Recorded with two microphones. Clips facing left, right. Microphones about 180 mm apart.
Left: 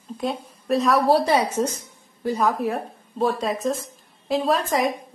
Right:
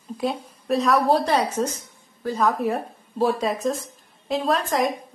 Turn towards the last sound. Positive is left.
turn(degrees=0)  # may be behind; listen again after turning